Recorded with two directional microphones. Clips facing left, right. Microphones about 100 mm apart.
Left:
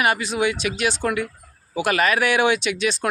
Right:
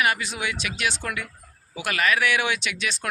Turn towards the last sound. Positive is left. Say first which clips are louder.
# left 7 dB
turn(degrees=30)  # may be behind; listen again after turning